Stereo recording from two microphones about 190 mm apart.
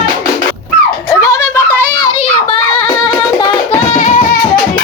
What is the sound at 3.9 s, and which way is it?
Music, 40° left (ahead or behind).